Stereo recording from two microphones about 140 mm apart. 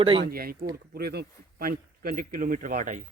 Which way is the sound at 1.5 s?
90° right.